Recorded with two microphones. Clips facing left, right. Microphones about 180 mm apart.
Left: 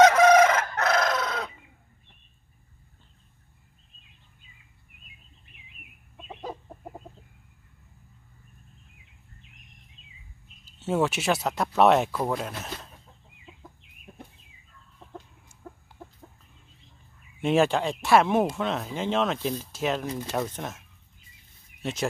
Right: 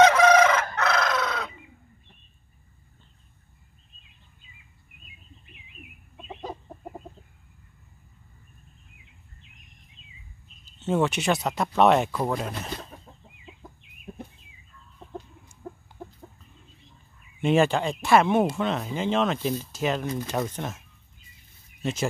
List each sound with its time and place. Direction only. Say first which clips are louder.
0.0 s chicken: left 1 dB; 45° left (ahead or behind)
10.6 s speech: right 1 dB; 5° left (ahead or behind)
17.4 s speech: right 1 dB; centre (ahead or behind)